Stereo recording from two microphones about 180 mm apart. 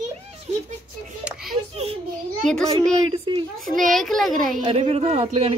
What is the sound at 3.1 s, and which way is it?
Speech, 30° right (ahead or behind).